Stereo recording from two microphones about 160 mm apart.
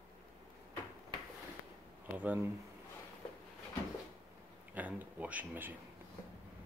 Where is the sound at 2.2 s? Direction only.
10° right (ahead or behind).